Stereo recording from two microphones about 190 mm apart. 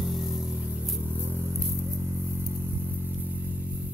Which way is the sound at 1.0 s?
10° right (ahead or behind).